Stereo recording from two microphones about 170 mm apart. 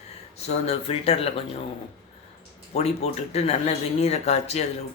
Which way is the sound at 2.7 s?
40° left (ahead or behind).